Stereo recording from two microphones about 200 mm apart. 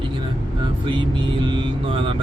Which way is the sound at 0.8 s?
25° right (ahead or behind).